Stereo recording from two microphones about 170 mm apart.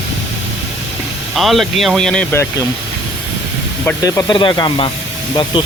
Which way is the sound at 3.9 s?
20° left (ahead or behind).